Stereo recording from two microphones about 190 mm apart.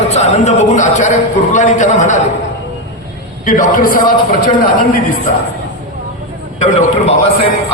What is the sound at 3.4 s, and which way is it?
Speech, 45° left (ahead or behind).